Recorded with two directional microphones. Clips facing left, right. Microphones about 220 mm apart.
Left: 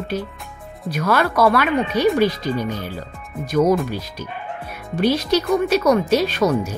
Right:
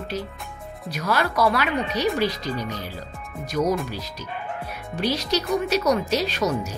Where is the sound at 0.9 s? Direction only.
55° left (ahead or behind).